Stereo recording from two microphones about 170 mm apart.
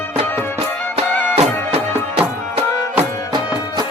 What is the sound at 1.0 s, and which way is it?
Music, 35° right (ahead or behind).